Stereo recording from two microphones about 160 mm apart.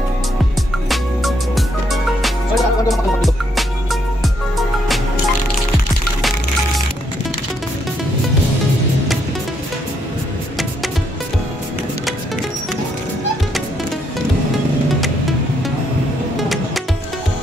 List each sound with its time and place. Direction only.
0.8 s music: centre (ahead or behind)
16.3 s music: centre (ahead or behind)